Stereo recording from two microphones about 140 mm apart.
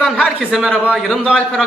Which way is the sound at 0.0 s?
5° right (ahead or behind).